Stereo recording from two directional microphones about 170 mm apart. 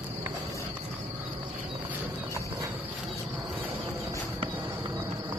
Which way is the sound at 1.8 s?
15° right (ahead or behind).